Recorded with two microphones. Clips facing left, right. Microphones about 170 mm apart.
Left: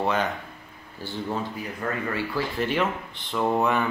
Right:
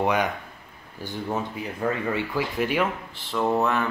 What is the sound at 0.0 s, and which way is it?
Speech, 15° right (ahead or behind).